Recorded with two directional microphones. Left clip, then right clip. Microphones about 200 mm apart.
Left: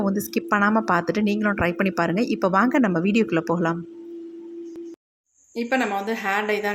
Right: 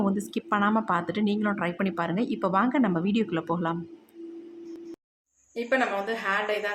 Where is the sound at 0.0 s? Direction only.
15° left (ahead or behind).